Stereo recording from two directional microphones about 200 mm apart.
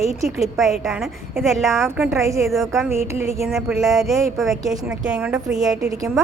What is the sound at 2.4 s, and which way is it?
Speech, centre (ahead or behind).